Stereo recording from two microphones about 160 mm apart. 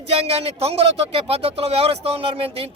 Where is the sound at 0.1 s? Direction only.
40° right (ahead or behind).